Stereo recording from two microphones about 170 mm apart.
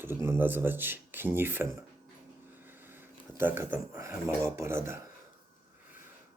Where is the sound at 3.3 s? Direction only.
15° right (ahead or behind).